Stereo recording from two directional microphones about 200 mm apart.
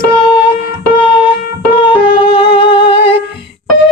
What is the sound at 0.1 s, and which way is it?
Music, 25° left (ahead or behind).